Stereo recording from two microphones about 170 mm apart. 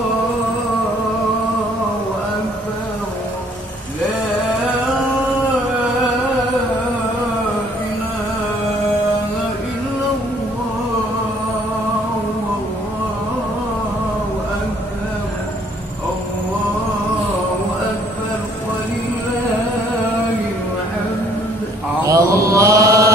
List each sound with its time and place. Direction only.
22.0 s mantra: 20° right (ahead or behind)